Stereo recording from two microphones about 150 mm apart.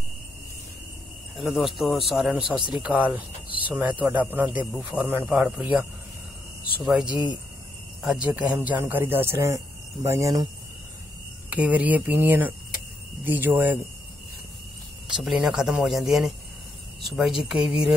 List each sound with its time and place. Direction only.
1.8 s speech: centre (ahead or behind)
8.3 s speech: 15° right (ahead or behind)
11.5 s speech: 10° right (ahead or behind)
15.1 s speech: 5° right (ahead or behind)